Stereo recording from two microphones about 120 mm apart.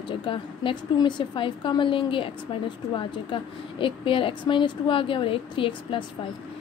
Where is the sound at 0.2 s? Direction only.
45° left (ahead or behind).